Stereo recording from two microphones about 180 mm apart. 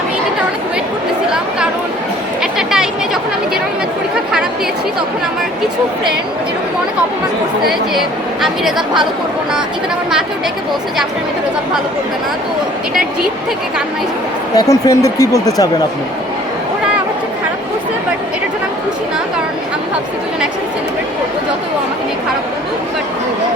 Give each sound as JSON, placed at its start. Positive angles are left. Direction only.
{"t": 1.3, "sound": "a sound", "side_deg": -5}
{"t": 2.4, "sound": "chatter", "side_deg": -5}
{"t": 7.7, "sound": "speech", "side_deg": 0}
{"t": 14.5, "sound": "speech", "side_deg": 20}